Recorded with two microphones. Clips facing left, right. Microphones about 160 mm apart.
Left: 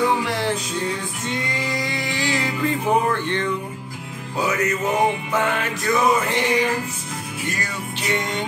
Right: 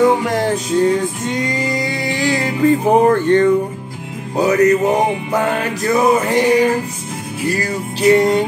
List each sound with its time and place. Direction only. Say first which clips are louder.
0.2 s music: right 6 dB; 45° right (ahead or behind)